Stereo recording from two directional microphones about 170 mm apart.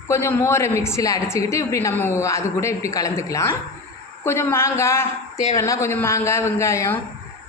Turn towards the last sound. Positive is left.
turn(degrees=15)  # may be behind; listen again after turning